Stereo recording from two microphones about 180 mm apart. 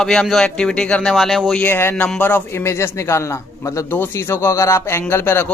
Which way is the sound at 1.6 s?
10° left (ahead or behind).